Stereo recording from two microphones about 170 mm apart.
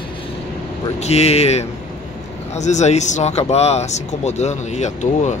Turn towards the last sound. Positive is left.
turn(degrees=45)  # may be behind; listen again after turning